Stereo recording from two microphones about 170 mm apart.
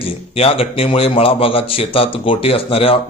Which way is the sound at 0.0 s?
35° left (ahead or behind).